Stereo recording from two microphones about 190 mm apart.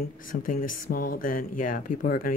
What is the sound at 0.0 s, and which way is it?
Speech, 45° left (ahead or behind).